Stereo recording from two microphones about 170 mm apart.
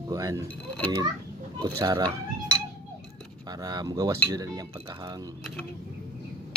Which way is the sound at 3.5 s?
25° right (ahead or behind).